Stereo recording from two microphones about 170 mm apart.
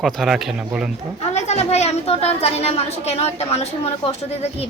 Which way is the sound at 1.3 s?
40° left (ahead or behind).